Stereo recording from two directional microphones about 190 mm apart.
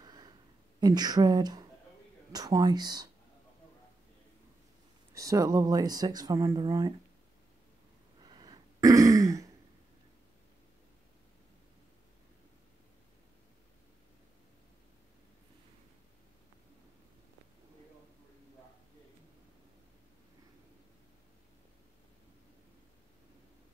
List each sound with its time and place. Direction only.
0.0 s a sound: 20° right (ahead or behind)
0.7 s speech: 20° right (ahead or behind)
5.1 s speech: 15° right (ahead or behind)
8.2 s throat clearing: 20° right (ahead or behind)